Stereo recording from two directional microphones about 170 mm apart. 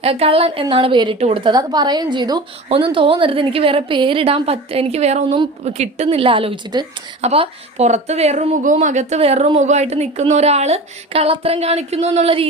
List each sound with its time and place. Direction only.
0.0 s a woman's voice: 35° right (ahead or behind)
7.2 s a woman's voice: 40° right (ahead or behind)